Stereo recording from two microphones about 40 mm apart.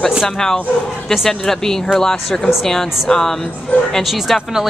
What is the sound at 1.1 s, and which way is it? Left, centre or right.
Speech, centre.